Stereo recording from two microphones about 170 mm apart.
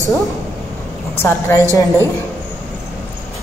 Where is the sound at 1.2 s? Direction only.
15° left (ahead or behind).